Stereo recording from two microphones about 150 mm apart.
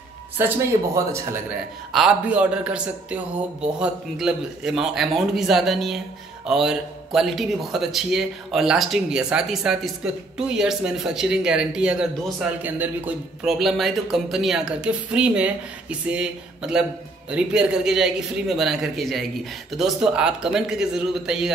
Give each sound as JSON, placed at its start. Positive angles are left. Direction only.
{"t": 0.4, "sound": "a man's voice", "side_deg": -15}
{"t": 1.9, "sound": "a man's voice", "side_deg": 0}